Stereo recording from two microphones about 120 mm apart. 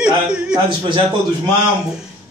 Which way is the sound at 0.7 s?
40° right (ahead or behind).